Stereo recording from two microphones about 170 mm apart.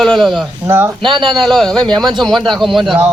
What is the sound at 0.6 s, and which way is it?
Speech, 15° right (ahead or behind).